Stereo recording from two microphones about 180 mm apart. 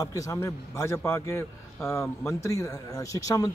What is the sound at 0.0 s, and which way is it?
A man's voice, 20° left (ahead or behind).